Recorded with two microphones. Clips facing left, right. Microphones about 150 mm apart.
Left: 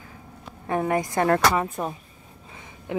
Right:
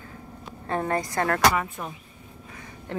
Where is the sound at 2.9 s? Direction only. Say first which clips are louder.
Left 4 dB; 10° left (ahead or behind).